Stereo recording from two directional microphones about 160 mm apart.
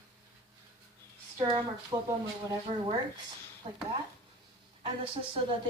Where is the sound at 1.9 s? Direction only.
25° right (ahead or behind).